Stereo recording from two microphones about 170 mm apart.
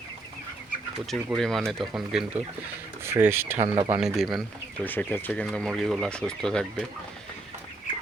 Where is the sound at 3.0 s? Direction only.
15° right (ahead or behind).